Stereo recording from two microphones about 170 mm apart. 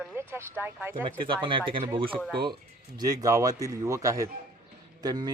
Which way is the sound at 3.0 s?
20° right (ahead or behind).